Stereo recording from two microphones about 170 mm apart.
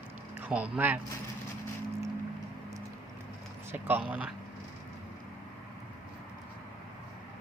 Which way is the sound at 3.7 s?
10° right (ahead or behind).